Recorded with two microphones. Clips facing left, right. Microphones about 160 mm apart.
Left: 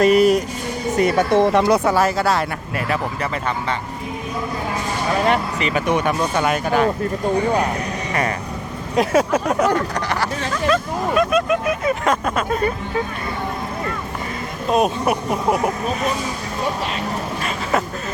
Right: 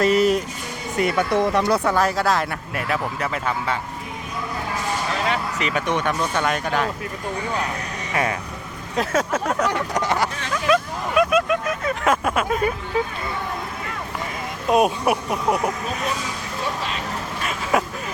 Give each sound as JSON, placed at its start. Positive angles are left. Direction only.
{"t": 0.0, "sound": "speech", "side_deg": 15}
{"t": 0.9, "sound": "speech", "side_deg": 40}
{"t": 1.3, "sound": "speech", "side_deg": 25}
{"t": 1.9, "sound": "speech", "side_deg": 5}
{"t": 5.5, "sound": "speech", "side_deg": 0}
{"t": 8.1, "sound": "speech", "side_deg": 0}
{"t": 9.0, "sound": "speech", "side_deg": 15}
{"t": 9.9, "sound": "speech", "side_deg": -20}
{"t": 10.5, "sound": "speech", "side_deg": -5}
{"t": 11.6, "sound": "speech", "side_deg": 10}
{"t": 12.0, "sound": "speech", "side_deg": -5}
{"t": 14.7, "sound": "speech", "side_deg": -10}
{"t": 17.4, "sound": "a sound", "side_deg": -5}